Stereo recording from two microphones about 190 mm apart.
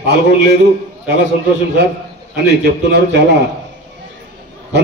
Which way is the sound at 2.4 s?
65° right (ahead or behind).